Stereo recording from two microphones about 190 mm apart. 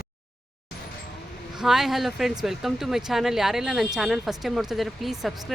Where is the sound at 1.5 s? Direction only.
Centre (ahead or behind).